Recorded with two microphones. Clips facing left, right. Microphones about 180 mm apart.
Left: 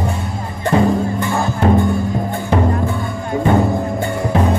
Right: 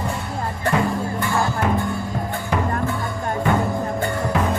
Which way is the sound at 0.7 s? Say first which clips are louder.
Left 7 dB; 30° left (ahead or behind).